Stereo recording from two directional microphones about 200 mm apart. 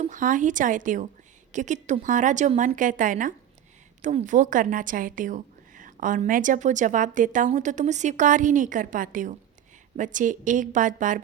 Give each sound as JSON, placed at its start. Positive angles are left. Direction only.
{"t": 0.0, "sound": "a woman's voice", "side_deg": -40}